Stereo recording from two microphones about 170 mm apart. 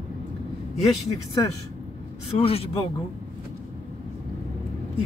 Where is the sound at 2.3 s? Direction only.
35° left (ahead or behind).